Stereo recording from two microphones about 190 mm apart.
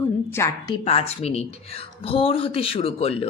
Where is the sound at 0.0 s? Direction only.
10° left (ahead or behind).